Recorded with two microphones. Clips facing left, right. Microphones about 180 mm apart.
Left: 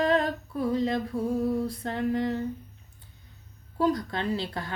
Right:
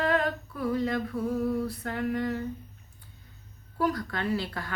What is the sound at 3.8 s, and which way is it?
Humming, 25° left (ahead or behind).